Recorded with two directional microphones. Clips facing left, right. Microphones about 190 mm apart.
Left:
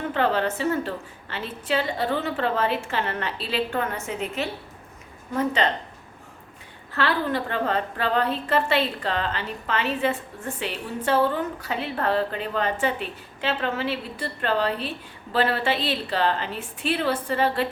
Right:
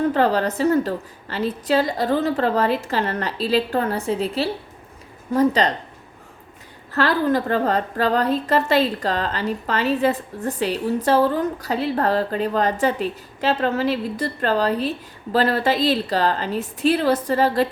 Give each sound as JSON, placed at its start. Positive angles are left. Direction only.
{"t": 0.0, "sound": "a woman's voice", "side_deg": -40}
{"t": 6.9, "sound": "a woman's voice", "side_deg": -40}